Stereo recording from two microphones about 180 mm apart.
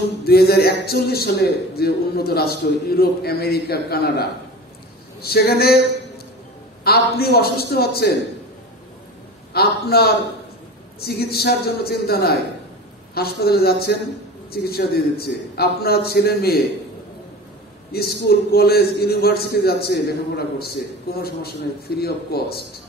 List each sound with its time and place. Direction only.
0.2 s a man's voice: 60° left (ahead or behind)
6.8 s a man's voice: 60° left (ahead or behind)
9.5 s a man's voice: 60° left (ahead or behind)
17.9 s a man's voice: 60° left (ahead or behind)